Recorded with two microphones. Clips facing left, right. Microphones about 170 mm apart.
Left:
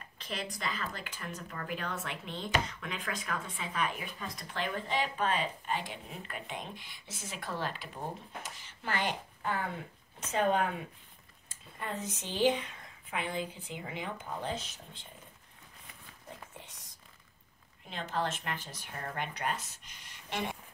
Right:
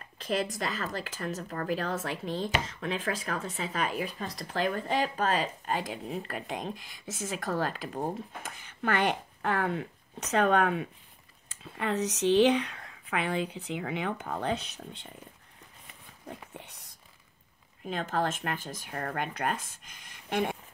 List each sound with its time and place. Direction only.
0.2 s a sound: 45° right (ahead or behind)
0.6 s speech: 45° right (ahead or behind); by 15.0 s 65° right (ahead or behind)
16.6 s whispering: 65° right (ahead or behind)
17.8 s speech: 45° right (ahead or behind)